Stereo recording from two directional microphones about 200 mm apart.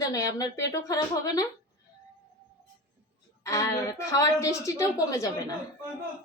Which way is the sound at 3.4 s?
15° left (ahead or behind).